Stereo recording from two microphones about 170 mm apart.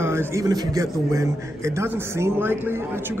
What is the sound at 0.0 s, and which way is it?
Speech, 15° right (ahead or behind).